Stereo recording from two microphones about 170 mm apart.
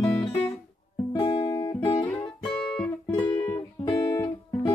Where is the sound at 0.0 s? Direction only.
10° left (ahead or behind).